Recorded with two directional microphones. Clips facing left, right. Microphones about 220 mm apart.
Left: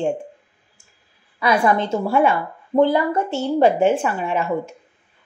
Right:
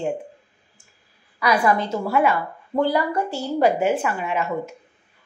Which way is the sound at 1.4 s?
25° left (ahead or behind).